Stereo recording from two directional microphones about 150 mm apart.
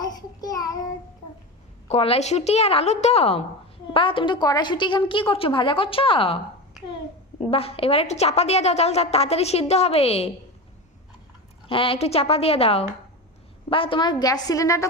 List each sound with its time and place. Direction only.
0.0 s child singing: 25° left (ahead or behind)
1.9 s a woman's voice: 40° left (ahead or behind)
7.5 s a woman's voice: 40° left (ahead or behind)
11.7 s a woman's voice: 35° left (ahead or behind); by 14.8 s 20° left (ahead or behind)